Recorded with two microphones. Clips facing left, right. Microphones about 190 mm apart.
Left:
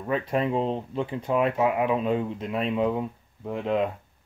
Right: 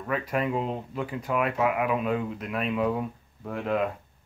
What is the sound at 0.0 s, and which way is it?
Speech, 30° left (ahead or behind).